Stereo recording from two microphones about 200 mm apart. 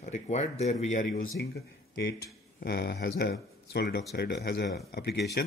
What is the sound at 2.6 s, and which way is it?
Speech, 50° left (ahead or behind).